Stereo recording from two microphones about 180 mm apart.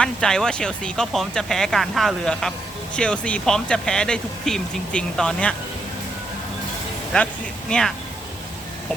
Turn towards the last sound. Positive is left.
turn(degrees=5)  # may be behind; listen again after turning